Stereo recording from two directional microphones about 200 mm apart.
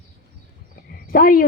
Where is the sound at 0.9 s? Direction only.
45° left (ahead or behind).